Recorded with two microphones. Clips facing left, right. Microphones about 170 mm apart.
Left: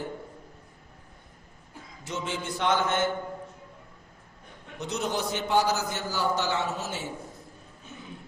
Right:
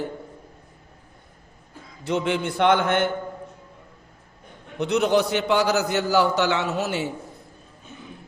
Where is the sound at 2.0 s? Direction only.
60° right (ahead or behind).